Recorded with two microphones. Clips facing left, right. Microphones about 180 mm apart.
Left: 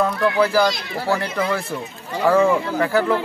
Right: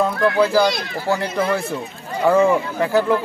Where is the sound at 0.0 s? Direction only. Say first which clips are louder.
Right 1 dB; 15° right (ahead or behind).